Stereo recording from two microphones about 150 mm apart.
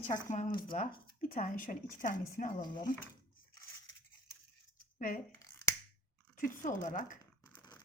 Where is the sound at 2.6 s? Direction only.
30° left (ahead or behind).